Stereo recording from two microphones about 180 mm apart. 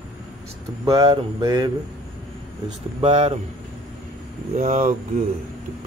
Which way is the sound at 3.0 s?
30° right (ahead or behind).